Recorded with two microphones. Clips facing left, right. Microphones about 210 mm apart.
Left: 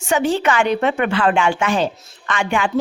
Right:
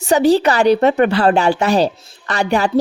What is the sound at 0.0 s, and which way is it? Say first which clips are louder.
A woman's voice: right 5 dB; 35° right (ahead or behind).